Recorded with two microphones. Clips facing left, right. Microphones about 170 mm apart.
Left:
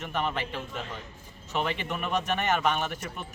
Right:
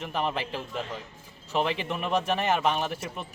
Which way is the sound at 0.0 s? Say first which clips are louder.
Right 1 dB; 35° right (ahead or behind).